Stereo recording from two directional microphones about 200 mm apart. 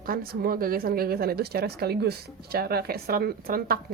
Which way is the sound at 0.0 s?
45° right (ahead or behind).